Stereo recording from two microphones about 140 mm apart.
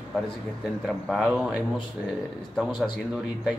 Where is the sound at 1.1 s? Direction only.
5° right (ahead or behind).